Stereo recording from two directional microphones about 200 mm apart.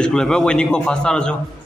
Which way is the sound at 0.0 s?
5° left (ahead or behind).